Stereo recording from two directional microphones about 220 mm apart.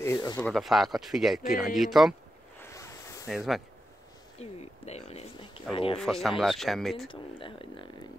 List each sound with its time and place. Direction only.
0.0 s a sound: 15° left (ahead or behind)
0.4 s speech: centre (ahead or behind)
2.6 s a sound: 15° left (ahead or behind)
3.3 s speech: centre (ahead or behind)
4.4 s speech: 30° left (ahead or behind)
5.9 s speech: centre (ahead or behind)
7.1 s speech: 25° left (ahead or behind)